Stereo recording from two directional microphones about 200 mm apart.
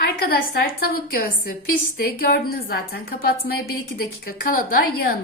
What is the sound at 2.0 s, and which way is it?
A woman's voice, 50° left (ahead or behind).